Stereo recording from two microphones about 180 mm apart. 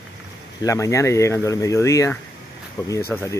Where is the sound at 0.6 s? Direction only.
15° left (ahead or behind).